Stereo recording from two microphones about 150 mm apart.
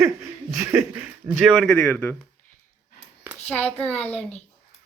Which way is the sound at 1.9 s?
15° left (ahead or behind).